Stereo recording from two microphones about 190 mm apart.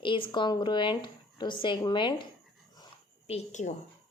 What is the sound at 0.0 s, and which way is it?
A woman's voice, 25° left (ahead or behind).